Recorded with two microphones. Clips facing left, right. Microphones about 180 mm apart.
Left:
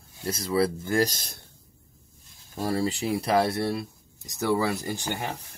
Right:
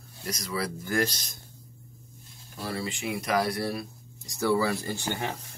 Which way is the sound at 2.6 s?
40° left (ahead or behind).